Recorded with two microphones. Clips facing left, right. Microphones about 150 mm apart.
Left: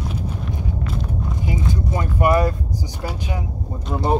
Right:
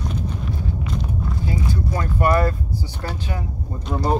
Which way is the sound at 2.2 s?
15° left (ahead or behind).